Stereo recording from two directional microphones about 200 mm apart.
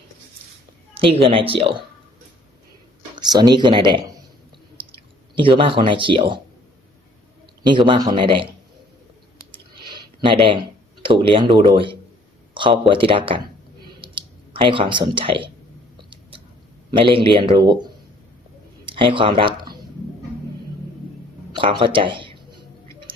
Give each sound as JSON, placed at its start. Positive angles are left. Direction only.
{"t": 0.9, "sound": "speech", "side_deg": -25}
{"t": 3.2, "sound": "speech", "side_deg": -20}
{"t": 7.6, "sound": "speech", "side_deg": -25}
{"t": 9.9, "sound": "a sound", "side_deg": -25}
{"t": 11.0, "sound": "speech", "side_deg": -25}
{"t": 14.0, "sound": "a sound", "side_deg": -25}
{"t": 16.9, "sound": "speech", "side_deg": -25}
{"t": 18.9, "sound": "speech", "side_deg": -25}
{"t": 21.5, "sound": "a sound", "side_deg": -25}